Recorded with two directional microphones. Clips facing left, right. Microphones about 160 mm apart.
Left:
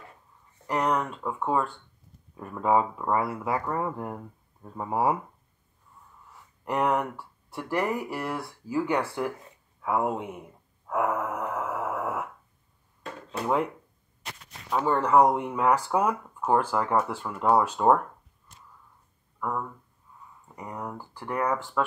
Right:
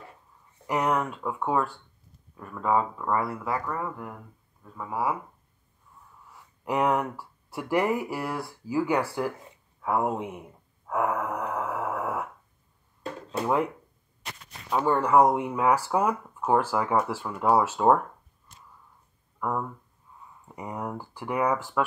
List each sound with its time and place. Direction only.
0.7 s speech: 5° right (ahead or behind)
2.3 s speech: 20° left (ahead or behind)
6.6 s speech: 5° right (ahead or behind)
10.9 s a sound: centre (ahead or behind)
14.7 s speech: 5° right (ahead or behind)
20.5 s speech: 10° right (ahead or behind)